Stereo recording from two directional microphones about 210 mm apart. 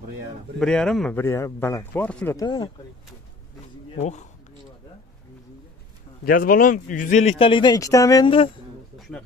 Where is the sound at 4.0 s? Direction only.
35° left (ahead or behind).